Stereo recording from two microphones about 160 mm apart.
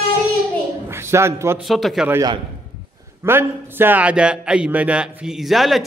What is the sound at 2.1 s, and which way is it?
Speech, 25° right (ahead or behind).